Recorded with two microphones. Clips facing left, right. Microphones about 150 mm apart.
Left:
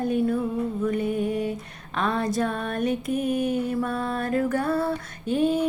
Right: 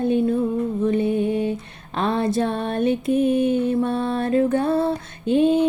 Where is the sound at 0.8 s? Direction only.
25° right (ahead or behind).